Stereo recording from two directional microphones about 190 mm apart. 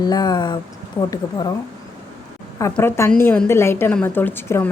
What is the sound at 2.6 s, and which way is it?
A woman's voice, 15° left (ahead or behind).